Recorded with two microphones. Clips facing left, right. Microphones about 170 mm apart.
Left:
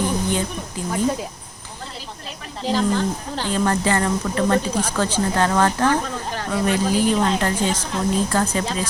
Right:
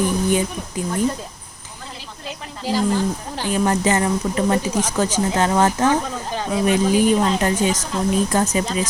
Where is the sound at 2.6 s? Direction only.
10° right (ahead or behind).